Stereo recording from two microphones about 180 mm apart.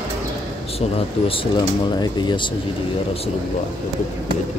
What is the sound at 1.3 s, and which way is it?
Speech, 30° left (ahead or behind).